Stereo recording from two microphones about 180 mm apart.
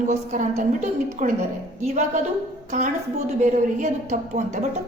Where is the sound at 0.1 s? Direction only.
40° right (ahead or behind).